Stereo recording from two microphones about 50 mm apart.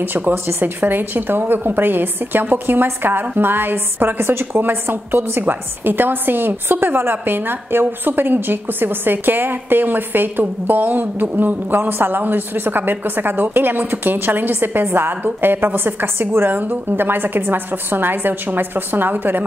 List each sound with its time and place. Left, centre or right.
0.0 s speech: right
0.3 s a woman's voice: right